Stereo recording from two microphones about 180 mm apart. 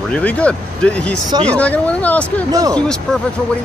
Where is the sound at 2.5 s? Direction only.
20° right (ahead or behind).